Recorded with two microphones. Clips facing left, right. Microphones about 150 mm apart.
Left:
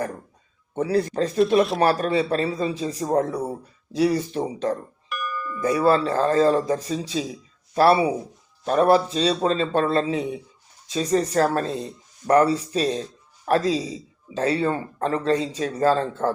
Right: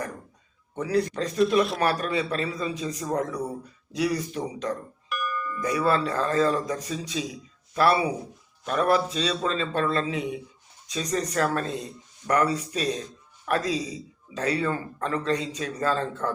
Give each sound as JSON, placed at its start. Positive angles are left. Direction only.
{"t": 0.8, "sound": "speech", "side_deg": 30}
{"t": 5.0, "sound": "dog", "side_deg": 0}
{"t": 5.5, "sound": "speech", "side_deg": 30}